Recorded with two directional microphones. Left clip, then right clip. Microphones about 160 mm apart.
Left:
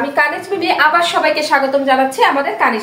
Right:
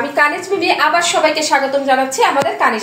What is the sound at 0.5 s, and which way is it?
A woman's voice, 45° right (ahead or behind).